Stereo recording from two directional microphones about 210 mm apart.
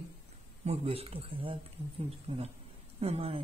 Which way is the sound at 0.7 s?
30° right (ahead or behind).